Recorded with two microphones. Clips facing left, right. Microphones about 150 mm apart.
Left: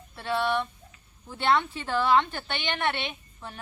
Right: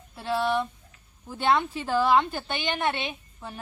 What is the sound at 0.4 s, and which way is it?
Speech, 40° right (ahead or behind).